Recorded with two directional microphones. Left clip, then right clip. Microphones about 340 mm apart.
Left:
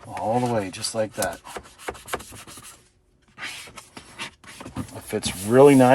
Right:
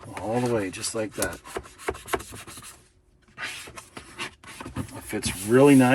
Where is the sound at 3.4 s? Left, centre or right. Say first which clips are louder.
Even; centre.